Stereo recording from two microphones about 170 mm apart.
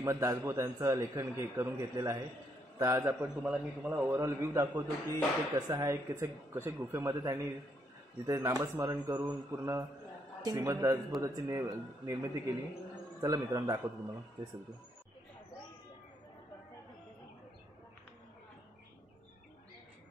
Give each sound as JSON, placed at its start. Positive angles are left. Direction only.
{"t": 0.0, "sound": "a man's voice", "side_deg": -15}